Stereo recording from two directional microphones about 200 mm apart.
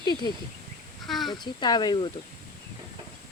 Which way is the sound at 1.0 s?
Centre (ahead or behind).